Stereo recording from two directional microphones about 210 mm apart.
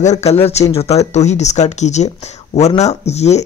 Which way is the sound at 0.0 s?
30° left (ahead or behind).